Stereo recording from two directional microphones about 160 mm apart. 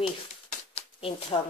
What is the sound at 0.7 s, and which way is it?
Shuffling cards, 35° left (ahead or behind).